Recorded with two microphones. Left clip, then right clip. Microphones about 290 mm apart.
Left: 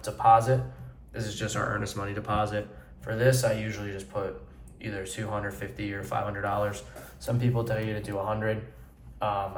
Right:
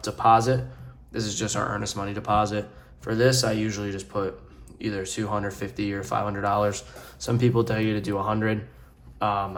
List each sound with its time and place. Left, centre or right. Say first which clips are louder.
0.0 s speech: right 1 dB; right